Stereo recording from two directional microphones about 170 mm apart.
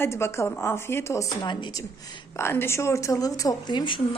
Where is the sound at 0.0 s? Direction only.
15° left (ahead or behind).